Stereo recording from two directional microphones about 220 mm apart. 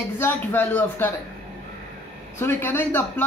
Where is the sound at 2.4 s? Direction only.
10° left (ahead or behind).